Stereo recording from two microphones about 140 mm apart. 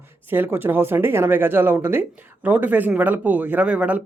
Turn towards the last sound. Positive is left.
turn(degrees=-10)  # may be behind; listen again after turning